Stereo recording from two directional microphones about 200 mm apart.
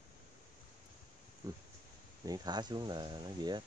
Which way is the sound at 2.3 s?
20° right (ahead or behind).